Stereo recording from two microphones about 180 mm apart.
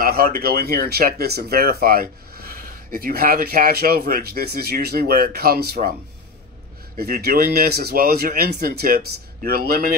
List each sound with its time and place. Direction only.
0.0 s speech: 55° right (ahead or behind)
7.0 s speech: 60° right (ahead or behind)